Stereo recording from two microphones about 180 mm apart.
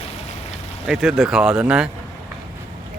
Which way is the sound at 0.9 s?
5° right (ahead or behind).